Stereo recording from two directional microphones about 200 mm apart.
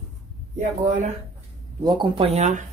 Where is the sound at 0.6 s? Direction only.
40° right (ahead or behind).